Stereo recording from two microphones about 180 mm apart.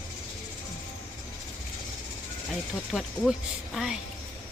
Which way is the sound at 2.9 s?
Centre (ahead or behind).